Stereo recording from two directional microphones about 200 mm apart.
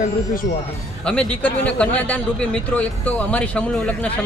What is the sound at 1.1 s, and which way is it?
Speech, 5° left (ahead or behind).